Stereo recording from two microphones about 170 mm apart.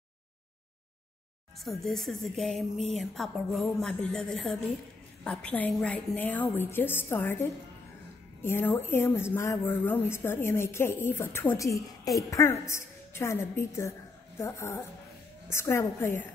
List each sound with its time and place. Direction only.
1.6 s a woman's voice: centre (ahead or behind)
8.4 s a woman's voice: 15° left (ahead or behind)